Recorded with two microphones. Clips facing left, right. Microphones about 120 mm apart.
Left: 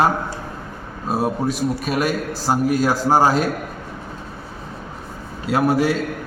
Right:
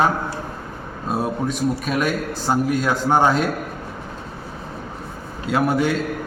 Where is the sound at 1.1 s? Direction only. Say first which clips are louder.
Left 2 dB; 5° left (ahead or behind).